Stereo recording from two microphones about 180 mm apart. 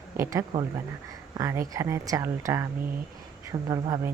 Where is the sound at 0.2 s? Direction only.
15° right (ahead or behind).